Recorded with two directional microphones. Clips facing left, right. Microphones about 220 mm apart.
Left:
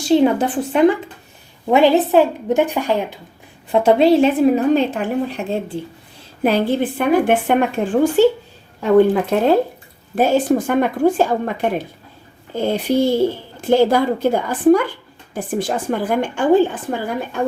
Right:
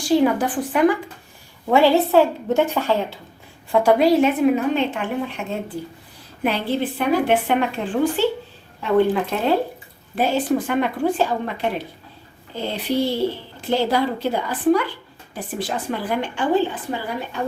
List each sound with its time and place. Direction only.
0.0 s a woman's voice: 25° left (ahead or behind)
6.4 s a woman's voice: 45° left (ahead or behind)
9.3 s a woman's voice: 50° left (ahead or behind)